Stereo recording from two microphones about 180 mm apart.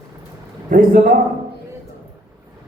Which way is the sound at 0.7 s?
50° right (ahead or behind).